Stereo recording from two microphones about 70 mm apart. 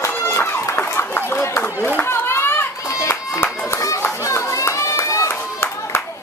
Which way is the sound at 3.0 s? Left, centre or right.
Left.